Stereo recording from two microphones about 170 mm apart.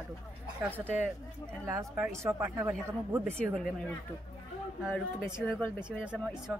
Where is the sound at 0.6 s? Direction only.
10° right (ahead or behind).